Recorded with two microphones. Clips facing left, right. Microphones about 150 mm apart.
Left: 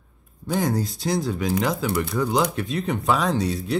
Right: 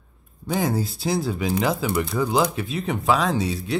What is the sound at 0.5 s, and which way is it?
Speech, 5° right (ahead or behind).